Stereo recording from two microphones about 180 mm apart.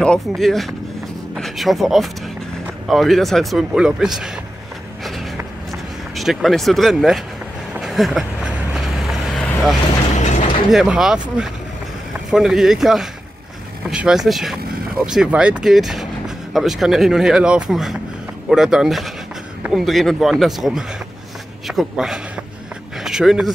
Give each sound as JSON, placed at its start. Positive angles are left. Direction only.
{"t": 0.0, "sound": "speech", "side_deg": 5}
{"t": 5.7, "sound": "speech", "side_deg": 0}
{"t": 7.8, "sound": "vehicle", "side_deg": 0}
{"t": 10.1, "sound": "mechanisms", "side_deg": 40}
{"t": 10.7, "sound": "speech", "side_deg": -5}
{"t": 22.9, "sound": "a sound", "side_deg": 0}